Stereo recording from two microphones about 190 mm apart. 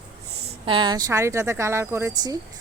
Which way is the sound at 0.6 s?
25° right (ahead or behind).